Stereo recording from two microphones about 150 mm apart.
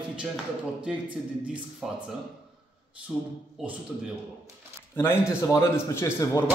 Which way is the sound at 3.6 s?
5° right (ahead or behind).